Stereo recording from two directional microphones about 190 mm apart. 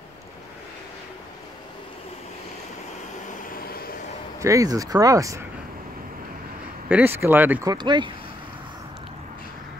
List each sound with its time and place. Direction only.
3.4 s vehicle: 50° left (ahead or behind)
4.4 s speech: 15° right (ahead or behind)
6.9 s speech: 10° right (ahead or behind)
7.7 s speech: 25° right (ahead or behind)